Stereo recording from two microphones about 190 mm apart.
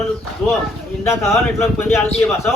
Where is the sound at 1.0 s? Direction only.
15° left (ahead or behind).